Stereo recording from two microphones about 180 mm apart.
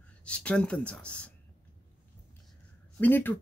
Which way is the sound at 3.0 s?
10° left (ahead or behind).